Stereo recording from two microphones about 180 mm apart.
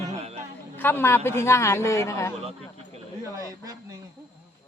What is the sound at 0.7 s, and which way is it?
A man's voice, 10° left (ahead or behind).